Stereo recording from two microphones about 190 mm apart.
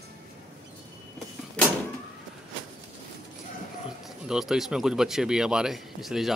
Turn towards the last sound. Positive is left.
turn(degrees=0)  # may be behind; listen again after turning